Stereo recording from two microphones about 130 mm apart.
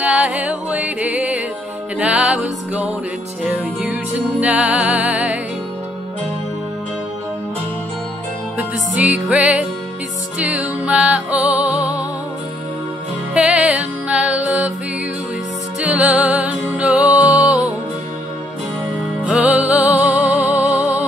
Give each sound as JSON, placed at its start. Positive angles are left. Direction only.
{"t": 0.0, "sound": "music", "side_deg": -5}
{"t": 3.4, "sound": "music", "side_deg": -10}
{"t": 8.5, "sound": "music", "side_deg": -10}
{"t": 13.3, "sound": "music", "side_deg": -10}
{"t": 15.9, "sound": "music", "side_deg": -10}
{"t": 17.4, "sound": "music", "side_deg": 25}
{"t": 19.2, "sound": "music", "side_deg": -10}